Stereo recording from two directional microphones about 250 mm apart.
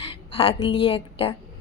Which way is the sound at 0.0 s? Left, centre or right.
Left.